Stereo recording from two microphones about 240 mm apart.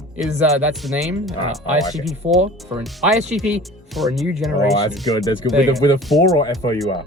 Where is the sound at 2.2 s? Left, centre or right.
Right.